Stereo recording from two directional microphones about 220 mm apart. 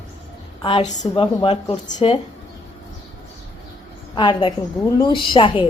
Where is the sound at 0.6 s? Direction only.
30° left (ahead or behind).